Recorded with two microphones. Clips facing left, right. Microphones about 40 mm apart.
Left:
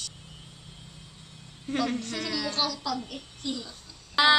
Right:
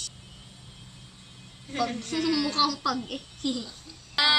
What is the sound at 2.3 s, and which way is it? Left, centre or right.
Speech, right.